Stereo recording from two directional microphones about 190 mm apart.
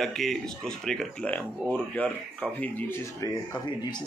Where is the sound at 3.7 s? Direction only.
25° left (ahead or behind).